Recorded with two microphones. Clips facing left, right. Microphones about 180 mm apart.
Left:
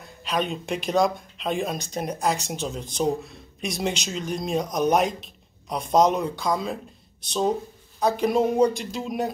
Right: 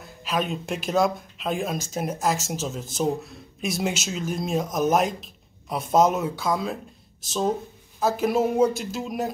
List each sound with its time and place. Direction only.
0.0 s speech: centre (ahead or behind)